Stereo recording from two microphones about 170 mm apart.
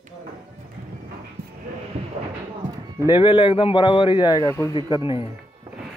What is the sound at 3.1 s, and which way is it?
A man's voice, 30° left (ahead or behind).